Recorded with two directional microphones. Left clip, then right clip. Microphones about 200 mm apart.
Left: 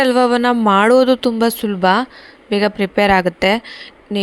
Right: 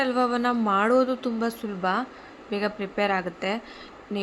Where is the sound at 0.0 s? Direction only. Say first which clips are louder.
Left 10 dB; 45° left (ahead or behind).